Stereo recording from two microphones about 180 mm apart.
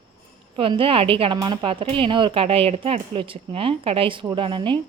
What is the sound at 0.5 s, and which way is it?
A woman's voice, 30° right (ahead or behind).